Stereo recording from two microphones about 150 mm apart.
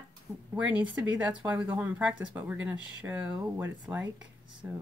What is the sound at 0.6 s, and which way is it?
Speech, 10° right (ahead or behind).